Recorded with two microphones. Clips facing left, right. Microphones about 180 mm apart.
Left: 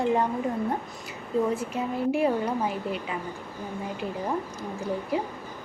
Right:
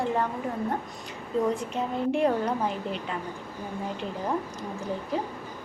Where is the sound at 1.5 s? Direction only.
5° left (ahead or behind).